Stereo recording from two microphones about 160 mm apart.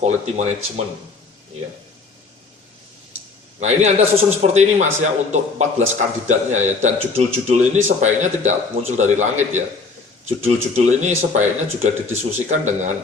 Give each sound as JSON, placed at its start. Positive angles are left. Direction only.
{"t": 0.0, "sound": "a man's voice", "side_deg": -45}
{"t": 3.6, "sound": "a man's voice", "side_deg": -45}